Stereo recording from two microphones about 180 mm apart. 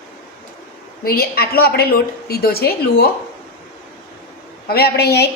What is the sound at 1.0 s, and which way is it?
A woman's voice, 55° left (ahead or behind).